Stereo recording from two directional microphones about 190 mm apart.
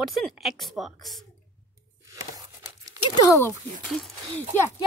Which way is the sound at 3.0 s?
15° left (ahead or behind).